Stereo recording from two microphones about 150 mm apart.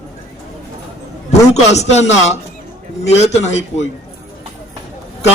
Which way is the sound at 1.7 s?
50° left (ahead or behind).